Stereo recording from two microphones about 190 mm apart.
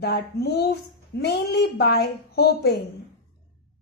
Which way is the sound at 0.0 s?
60° left (ahead or behind).